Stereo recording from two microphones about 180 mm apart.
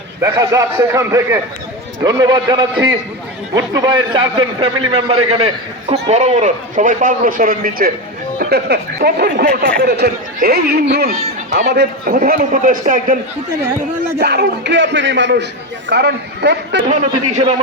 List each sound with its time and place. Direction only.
0.2 s a man's voice: 15° right (ahead or behind); by 13.1 s 50° right (ahead or behind)
14.2 s a man's voice: 65° right (ahead or behind); by 15.4 s 80° right
15.9 s a man's voice: 65° right (ahead or behind)
16.9 s a man's voice: 40° right (ahead or behind)